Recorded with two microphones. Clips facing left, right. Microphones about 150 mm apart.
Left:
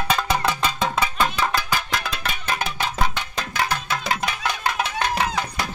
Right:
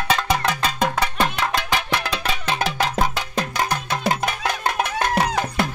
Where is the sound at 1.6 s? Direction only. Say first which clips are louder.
Right 2 dB; 70° right (ahead or behind).